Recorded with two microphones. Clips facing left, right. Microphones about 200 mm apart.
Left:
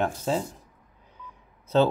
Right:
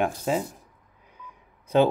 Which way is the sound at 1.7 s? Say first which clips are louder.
Right 1 dB; 15° right (ahead or behind).